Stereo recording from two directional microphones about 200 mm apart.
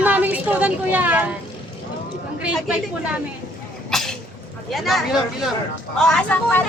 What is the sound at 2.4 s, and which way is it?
Speech, 5° right (ahead or behind).